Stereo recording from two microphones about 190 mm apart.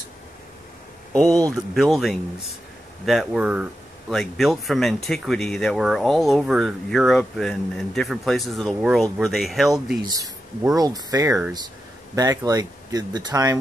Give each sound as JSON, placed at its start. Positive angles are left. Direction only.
{"t": 1.5, "sound": "speech", "side_deg": 0}
{"t": 10.0, "sound": "speech", "side_deg": -20}